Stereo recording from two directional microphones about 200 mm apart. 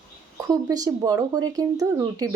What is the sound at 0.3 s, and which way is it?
Speech, 15° right (ahead or behind).